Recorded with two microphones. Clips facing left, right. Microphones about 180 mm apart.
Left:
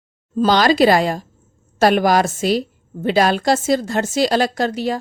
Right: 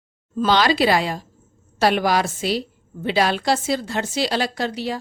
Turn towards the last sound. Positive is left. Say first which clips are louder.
# left 5 dB
turn(degrees=45)  # may be behind; listen again after turning